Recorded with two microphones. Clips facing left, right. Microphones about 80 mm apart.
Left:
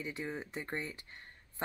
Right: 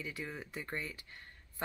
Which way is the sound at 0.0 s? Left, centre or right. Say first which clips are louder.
Left 3 dB; left.